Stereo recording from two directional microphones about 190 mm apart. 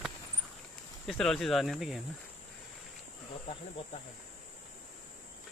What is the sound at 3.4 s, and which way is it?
Speech, 30° left (ahead or behind).